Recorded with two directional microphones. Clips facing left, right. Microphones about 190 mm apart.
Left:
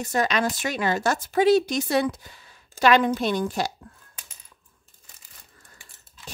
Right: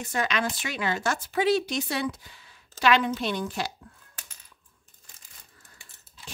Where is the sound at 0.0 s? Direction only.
40° left (ahead or behind).